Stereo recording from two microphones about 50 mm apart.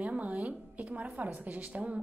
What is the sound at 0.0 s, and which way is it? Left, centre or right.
A woman's voice, right.